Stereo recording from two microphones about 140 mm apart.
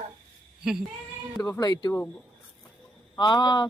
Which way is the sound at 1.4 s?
25° left (ahead or behind).